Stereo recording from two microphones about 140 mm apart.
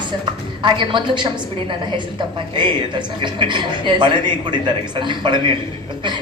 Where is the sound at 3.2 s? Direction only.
35° right (ahead or behind).